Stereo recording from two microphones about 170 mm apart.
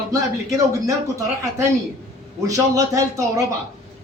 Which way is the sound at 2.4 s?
20° right (ahead or behind).